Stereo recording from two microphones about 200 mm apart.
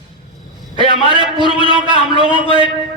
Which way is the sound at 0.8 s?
25° right (ahead or behind).